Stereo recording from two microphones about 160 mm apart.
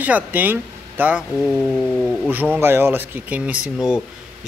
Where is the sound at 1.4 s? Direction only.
Centre (ahead or behind).